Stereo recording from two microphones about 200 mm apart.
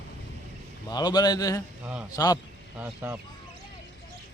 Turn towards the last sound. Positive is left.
turn(degrees=-10)  # may be behind; listen again after turning